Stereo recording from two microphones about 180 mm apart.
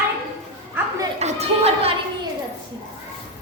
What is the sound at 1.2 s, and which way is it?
Speech, 35° right (ahead or behind).